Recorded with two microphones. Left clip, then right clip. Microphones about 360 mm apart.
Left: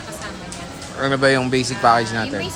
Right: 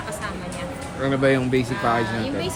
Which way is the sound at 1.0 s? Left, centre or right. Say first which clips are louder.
Left 4 dB; centre.